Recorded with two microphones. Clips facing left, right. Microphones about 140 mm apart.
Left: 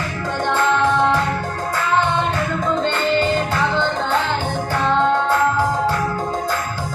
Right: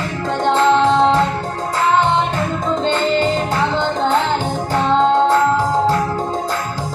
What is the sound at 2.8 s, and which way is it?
Music, 30° right (ahead or behind).